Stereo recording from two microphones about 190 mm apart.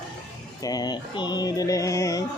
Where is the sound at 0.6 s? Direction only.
20° left (ahead or behind).